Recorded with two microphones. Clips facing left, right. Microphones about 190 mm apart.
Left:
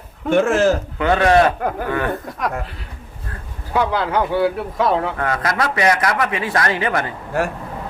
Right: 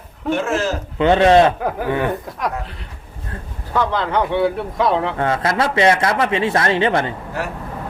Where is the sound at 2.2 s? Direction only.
Centre (ahead or behind).